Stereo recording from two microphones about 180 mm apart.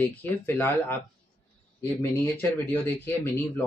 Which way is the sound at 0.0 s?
10° left (ahead or behind).